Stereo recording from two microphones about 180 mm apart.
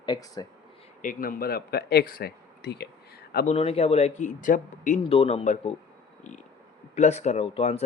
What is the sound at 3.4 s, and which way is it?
Speech, 35° left (ahead or behind).